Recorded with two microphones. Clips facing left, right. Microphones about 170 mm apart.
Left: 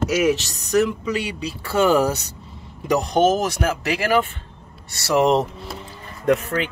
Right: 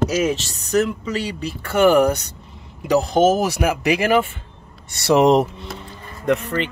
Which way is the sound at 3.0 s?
5° right (ahead or behind).